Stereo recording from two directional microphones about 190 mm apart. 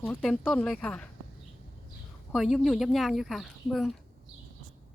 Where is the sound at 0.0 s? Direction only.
5° left (ahead or behind).